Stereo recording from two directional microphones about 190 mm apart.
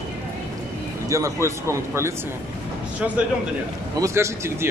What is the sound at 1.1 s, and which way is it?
Speech, 15° right (ahead or behind).